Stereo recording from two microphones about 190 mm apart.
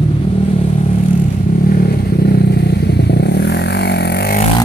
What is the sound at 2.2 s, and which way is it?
Vehicle, 55° left (ahead or behind).